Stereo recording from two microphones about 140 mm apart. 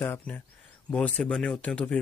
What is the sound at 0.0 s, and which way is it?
Speech, 15° left (ahead or behind).